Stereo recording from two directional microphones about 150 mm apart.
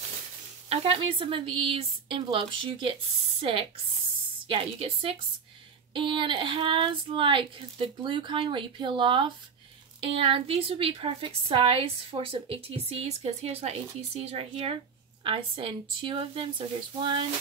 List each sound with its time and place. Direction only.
0.7 s a woman's voice: 35° right (ahead or behind)